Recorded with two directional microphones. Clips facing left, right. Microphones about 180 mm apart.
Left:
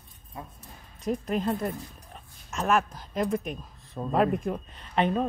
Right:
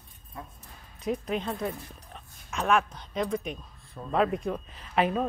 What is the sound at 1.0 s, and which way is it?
Speech, centre (ahead or behind).